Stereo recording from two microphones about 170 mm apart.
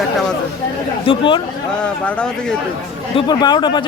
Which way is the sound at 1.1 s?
30° left (ahead or behind).